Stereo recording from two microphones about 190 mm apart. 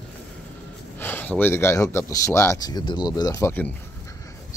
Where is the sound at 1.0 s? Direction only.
10° left (ahead or behind).